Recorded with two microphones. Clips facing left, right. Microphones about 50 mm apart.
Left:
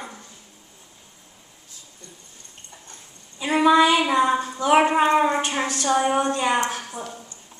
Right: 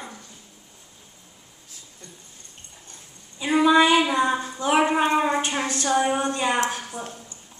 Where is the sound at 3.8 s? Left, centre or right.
Right.